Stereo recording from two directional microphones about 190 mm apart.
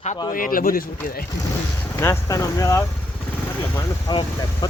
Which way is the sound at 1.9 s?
15° left (ahead or behind).